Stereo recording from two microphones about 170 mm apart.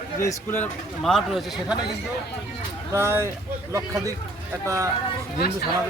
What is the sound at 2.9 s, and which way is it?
Speech, 15° right (ahead or behind).